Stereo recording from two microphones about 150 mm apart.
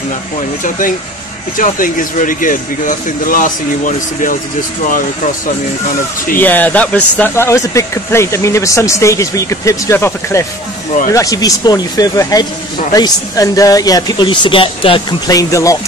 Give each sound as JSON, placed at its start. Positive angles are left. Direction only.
{"t": 0.7, "sound": "speech", "side_deg": 60}
{"t": 6.3, "sound": "a man's voice", "side_deg": 10}
{"t": 15.2, "sound": "a man's voice", "side_deg": 20}